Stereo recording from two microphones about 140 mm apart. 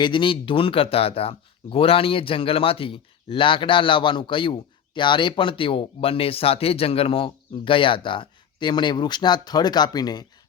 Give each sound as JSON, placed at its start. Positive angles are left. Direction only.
{"t": 0.0, "sound": "speech", "side_deg": 35}